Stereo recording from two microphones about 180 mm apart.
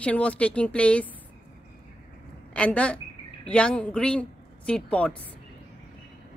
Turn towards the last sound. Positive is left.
turn(degrees=5)  # may be behind; listen again after turning